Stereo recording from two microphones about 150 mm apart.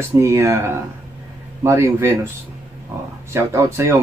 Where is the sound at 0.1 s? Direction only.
20° right (ahead or behind).